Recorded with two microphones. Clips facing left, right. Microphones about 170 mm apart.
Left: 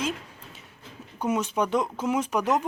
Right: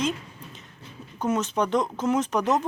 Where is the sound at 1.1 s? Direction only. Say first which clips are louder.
Right 1 dB; 10° left (ahead or behind).